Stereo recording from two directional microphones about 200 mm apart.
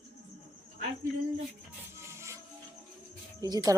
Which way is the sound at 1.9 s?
15° right (ahead or behind).